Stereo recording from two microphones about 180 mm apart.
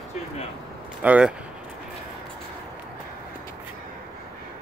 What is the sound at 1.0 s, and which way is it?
Speech, 10° right (ahead or behind).